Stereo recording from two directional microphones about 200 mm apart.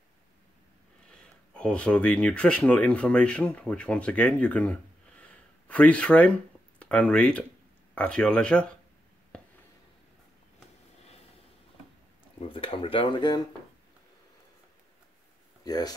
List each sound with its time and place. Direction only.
1.1 s speech: 5° left (ahead or behind)
9.3 s writing: 5° left (ahead or behind)
12.4 s speech: 25° left (ahead or behind)
15.6 s speech: 20° left (ahead or behind)